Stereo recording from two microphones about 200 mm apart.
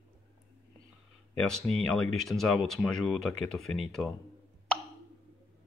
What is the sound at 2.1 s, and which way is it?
Speech, centre (ahead or behind).